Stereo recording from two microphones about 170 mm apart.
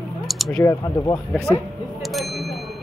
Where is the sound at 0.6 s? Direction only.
15° left (ahead or behind).